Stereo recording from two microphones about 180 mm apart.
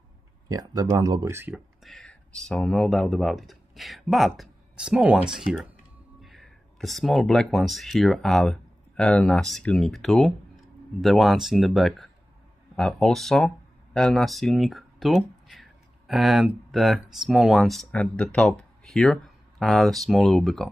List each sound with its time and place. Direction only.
0.5 s speech: 20° right (ahead or behind)
1.8 s whispering: centre (ahead or behind)
2.4 s speech: 5° left (ahead or behind)